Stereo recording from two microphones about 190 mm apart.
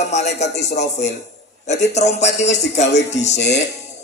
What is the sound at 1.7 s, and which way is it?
A man's voice, 35° left (ahead or behind).